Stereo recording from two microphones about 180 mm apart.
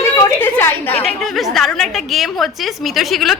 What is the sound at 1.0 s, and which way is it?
A woman's voice, centre (ahead or behind).